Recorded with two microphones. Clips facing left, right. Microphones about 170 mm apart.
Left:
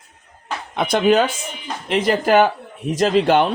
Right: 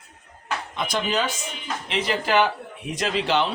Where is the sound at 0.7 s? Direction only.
60° left (ahead or behind).